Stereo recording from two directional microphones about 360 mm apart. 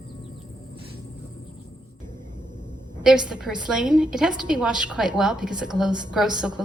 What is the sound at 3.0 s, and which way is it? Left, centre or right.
Speech, centre.